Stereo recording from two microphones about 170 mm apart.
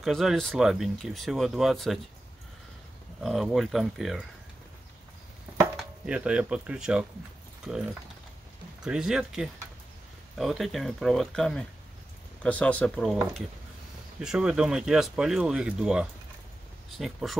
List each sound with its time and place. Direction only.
0.0 s speech: centre (ahead or behind)
3.2 s speech: centre (ahead or behind)
5.8 s speech: 5° right (ahead or behind)
14.2 s speech: 5° right (ahead or behind)